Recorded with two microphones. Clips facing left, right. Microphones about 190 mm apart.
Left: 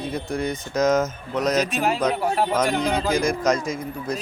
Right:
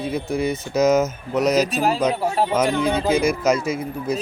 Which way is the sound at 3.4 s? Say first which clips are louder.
Right 2 dB; 5° right (ahead or behind).